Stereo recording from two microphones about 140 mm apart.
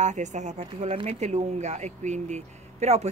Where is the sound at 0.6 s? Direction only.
45° right (ahead or behind).